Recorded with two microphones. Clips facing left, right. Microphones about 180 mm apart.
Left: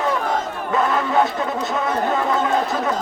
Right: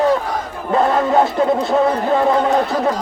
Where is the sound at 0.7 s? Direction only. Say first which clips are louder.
Right 5 dB; 35° right (ahead or behind).